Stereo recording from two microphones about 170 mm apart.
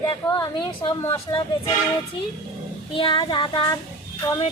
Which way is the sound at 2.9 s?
30° left (ahead or behind).